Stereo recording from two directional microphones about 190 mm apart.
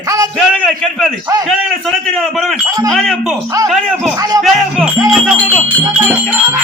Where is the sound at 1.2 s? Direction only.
20° right (ahead or behind).